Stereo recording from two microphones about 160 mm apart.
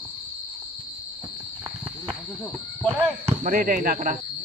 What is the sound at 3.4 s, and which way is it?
Speech, 65° right (ahead or behind).